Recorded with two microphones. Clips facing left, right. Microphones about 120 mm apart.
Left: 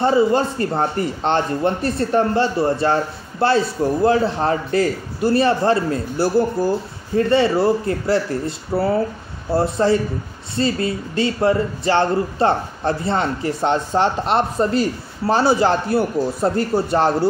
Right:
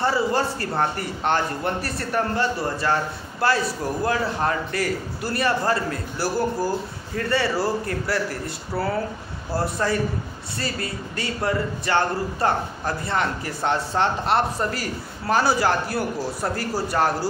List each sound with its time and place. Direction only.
0.0 s a man's voice: 20° left (ahead or behind)